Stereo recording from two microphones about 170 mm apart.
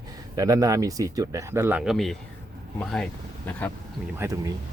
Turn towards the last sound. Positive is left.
turn(degrees=-20)  # may be behind; listen again after turning